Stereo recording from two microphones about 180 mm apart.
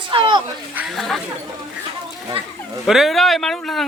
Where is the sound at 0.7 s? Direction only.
5° right (ahead or behind).